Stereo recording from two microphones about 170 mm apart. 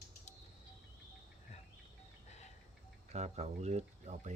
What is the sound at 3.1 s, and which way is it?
Speech, 40° right (ahead or behind).